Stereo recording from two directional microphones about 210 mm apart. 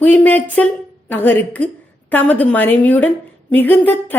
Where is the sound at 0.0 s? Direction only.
5° left (ahead or behind).